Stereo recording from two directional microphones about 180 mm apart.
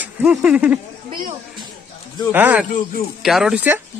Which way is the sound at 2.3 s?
10° right (ahead or behind).